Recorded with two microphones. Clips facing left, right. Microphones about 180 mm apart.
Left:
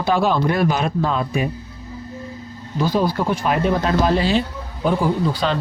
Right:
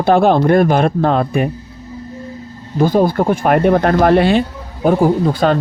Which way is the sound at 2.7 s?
50° right (ahead or behind).